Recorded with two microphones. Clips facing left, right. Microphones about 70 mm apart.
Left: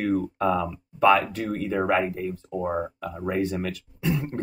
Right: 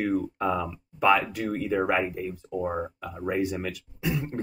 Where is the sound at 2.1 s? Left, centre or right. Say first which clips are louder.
Left 2 dB; centre.